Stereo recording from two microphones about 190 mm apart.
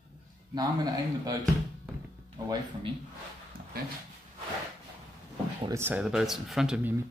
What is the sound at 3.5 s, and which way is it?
Dog, 50° right (ahead or behind).